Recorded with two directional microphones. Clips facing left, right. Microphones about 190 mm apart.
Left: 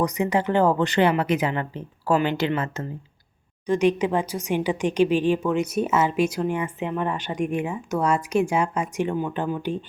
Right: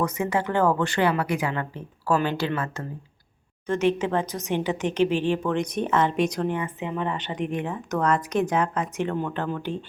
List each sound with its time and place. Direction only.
0.0 s a woman's voice: 15° left (ahead or behind)